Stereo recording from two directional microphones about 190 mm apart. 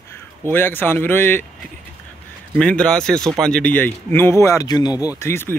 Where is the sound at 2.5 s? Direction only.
5° left (ahead or behind).